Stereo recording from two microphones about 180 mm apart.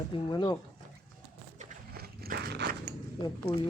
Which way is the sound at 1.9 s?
60° right (ahead or behind).